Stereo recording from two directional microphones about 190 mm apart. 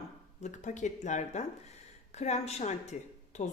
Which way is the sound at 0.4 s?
40° left (ahead or behind).